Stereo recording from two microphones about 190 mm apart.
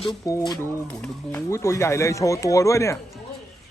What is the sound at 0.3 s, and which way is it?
Speech, 20° left (ahead or behind).